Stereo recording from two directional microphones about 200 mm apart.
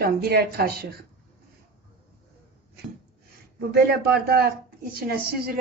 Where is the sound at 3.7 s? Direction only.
50° right (ahead or behind).